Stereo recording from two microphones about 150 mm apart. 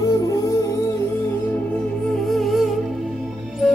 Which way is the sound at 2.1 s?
Centre (ahead or behind).